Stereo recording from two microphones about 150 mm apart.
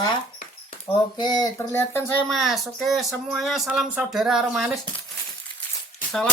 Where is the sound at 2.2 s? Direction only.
Centre (ahead or behind).